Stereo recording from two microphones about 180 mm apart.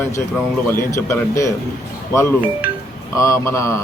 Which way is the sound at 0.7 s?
15° left (ahead or behind).